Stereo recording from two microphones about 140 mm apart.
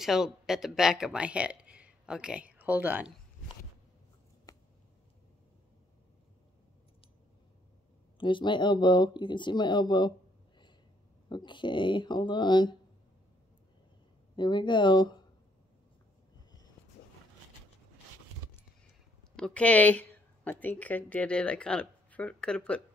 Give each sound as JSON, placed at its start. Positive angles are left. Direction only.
{"t": 0.0, "sound": "speech", "side_deg": -5}
{"t": 4.5, "sound": "a sound", "side_deg": 25}
{"t": 8.2, "sound": "speech", "side_deg": 35}
{"t": 11.2, "sound": "speech", "side_deg": 30}
{"t": 14.3, "sound": "speech", "side_deg": 35}
{"t": 19.3, "sound": "a woman's voice", "side_deg": 5}